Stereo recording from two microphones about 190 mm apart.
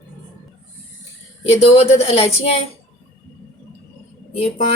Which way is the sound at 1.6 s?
30° left (ahead or behind).